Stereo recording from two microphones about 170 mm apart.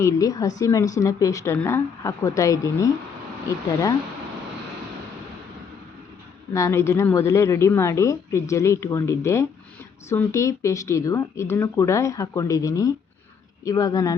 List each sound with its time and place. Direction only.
0.0 s a woman's voice: 20° left (ahead or behind)
6.5 s a woman's voice: 15° left (ahead or behind)